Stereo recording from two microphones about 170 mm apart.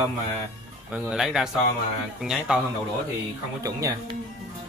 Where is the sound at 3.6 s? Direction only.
20° right (ahead or behind).